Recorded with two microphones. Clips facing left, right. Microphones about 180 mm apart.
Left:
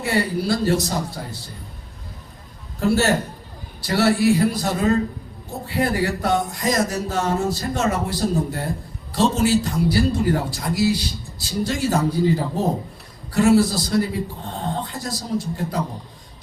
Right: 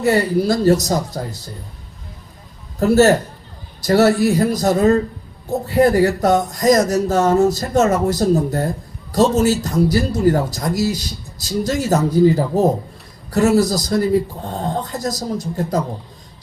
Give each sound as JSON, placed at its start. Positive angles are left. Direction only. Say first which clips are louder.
{"t": 0.0, "sound": "speech", "louder": "right 6 dB", "side_deg": -40}
{"t": 2.8, "sound": "a man's voice", "louder": "right 7 dB", "side_deg": -40}
{"t": 13.3, "sound": "speech", "louder": "right 1 dB", "side_deg": -40}